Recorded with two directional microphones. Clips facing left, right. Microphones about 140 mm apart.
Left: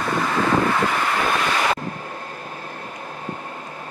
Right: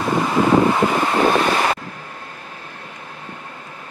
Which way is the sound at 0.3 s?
20° right (ahead or behind).